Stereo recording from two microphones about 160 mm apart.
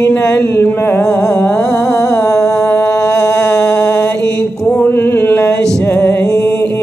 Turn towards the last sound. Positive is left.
turn(degrees=10)  # may be behind; listen again after turning